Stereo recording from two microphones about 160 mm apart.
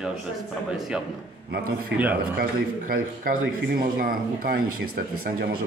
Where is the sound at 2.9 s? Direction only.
65° right (ahead or behind).